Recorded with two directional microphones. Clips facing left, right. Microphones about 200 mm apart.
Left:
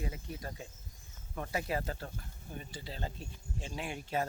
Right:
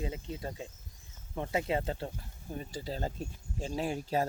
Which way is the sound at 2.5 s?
40° right (ahead or behind).